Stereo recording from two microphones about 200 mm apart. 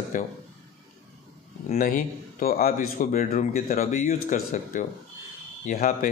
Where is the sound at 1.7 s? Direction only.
45° left (ahead or behind).